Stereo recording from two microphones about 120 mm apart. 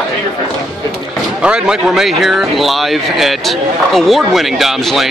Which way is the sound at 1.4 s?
5° right (ahead or behind).